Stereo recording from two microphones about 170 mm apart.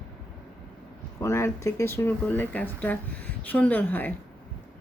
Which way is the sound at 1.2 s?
15° left (ahead or behind).